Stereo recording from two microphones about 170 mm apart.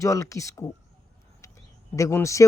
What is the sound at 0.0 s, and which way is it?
Speech, 20° left (ahead or behind).